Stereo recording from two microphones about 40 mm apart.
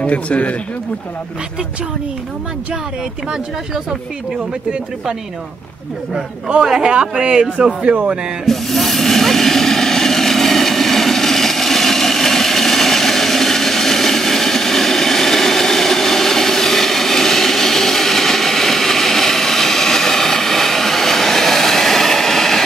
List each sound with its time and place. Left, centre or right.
0.0 s speech: left
6.4 s a man's voice: centre
7.9 s speech: right
8.5 s vehicle: centre